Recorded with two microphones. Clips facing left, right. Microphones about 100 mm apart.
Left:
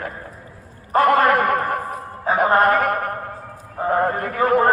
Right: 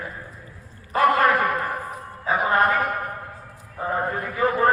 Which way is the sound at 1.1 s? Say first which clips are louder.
Left 2 dB; 60° left (ahead or behind).